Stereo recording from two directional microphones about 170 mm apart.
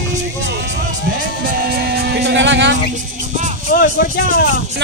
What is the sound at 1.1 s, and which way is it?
Speech, 60° right (ahead or behind).